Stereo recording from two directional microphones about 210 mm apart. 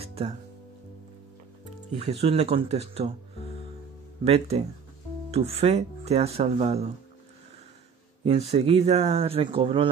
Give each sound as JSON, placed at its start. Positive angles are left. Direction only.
{"t": 0.0, "sound": "music", "side_deg": -25}
{"t": 1.9, "sound": "speech", "side_deg": -30}
{"t": 4.2, "sound": "speech", "side_deg": -30}
{"t": 8.2, "sound": "speech", "side_deg": -30}